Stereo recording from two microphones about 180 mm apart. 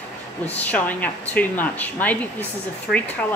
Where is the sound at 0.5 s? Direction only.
10° left (ahead or behind).